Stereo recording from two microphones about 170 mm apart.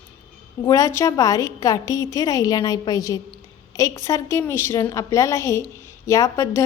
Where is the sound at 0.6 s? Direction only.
20° left (ahead or behind).